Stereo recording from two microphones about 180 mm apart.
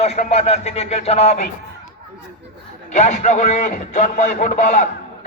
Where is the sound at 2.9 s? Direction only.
40° left (ahead or behind).